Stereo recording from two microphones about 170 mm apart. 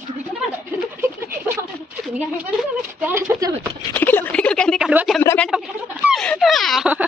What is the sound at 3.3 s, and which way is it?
Speech, 20° right (ahead or behind).